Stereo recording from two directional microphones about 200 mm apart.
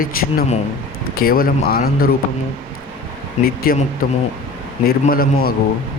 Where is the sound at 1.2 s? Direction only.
45° left (ahead or behind).